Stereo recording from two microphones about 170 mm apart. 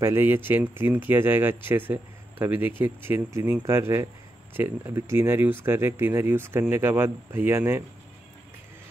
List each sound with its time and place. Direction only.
0.0 s speech: 15° right (ahead or behind)